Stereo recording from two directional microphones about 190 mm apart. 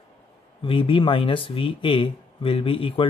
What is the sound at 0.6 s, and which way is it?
Speech, 25° left (ahead or behind).